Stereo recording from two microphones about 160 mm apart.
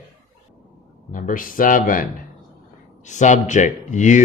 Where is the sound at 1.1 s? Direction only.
55° left (ahead or behind).